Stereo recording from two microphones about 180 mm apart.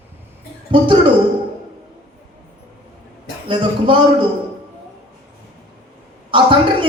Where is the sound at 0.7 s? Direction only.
25° right (ahead or behind).